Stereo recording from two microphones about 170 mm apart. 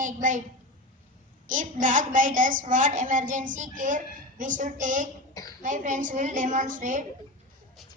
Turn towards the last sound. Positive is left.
turn(degrees=-50)  # may be behind; listen again after turning